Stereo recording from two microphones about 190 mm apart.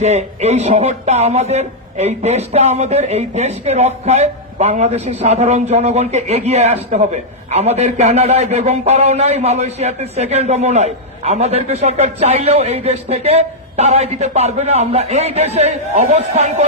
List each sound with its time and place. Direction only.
0.0 s a man's voice: 35° right (ahead or behind)